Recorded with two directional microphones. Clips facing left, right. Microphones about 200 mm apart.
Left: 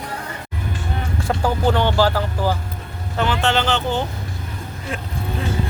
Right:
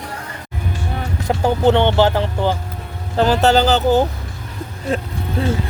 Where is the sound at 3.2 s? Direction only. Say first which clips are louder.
Right 6 dB; 40° right (ahead or behind).